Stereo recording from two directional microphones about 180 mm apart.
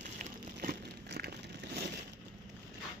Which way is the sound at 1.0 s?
60° right (ahead or behind).